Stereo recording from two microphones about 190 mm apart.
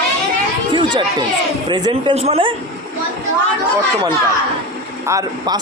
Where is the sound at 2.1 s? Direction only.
35° right (ahead or behind).